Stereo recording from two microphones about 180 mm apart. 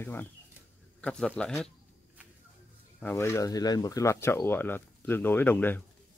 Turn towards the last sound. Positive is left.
turn(degrees=10)  # may be behind; listen again after turning